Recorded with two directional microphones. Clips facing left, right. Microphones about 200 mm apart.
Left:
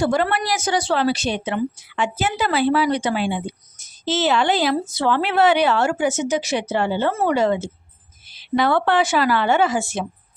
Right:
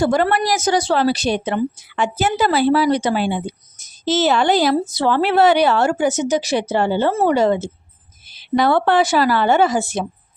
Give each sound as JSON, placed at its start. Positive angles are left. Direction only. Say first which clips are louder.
{"t": 0.0, "sound": "a woman's voice", "louder": "right 3 dB", "side_deg": -40}